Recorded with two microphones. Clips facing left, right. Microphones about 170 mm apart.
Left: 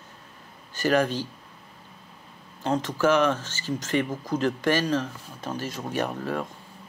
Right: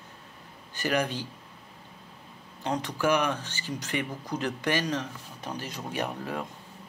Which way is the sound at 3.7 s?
45° left (ahead or behind).